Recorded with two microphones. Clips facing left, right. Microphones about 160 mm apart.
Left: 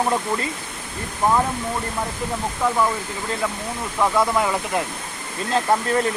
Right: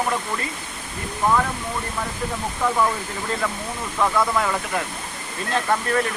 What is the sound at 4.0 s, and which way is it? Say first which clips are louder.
Speech: left 2 dB; 15° left (ahead or behind).